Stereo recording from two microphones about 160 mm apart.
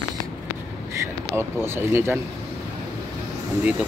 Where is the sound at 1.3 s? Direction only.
15° right (ahead or behind).